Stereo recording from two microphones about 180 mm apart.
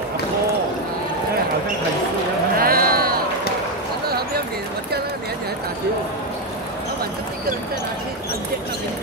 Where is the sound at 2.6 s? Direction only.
55° right (ahead or behind).